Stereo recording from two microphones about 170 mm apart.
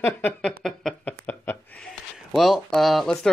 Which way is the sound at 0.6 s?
5° left (ahead or behind).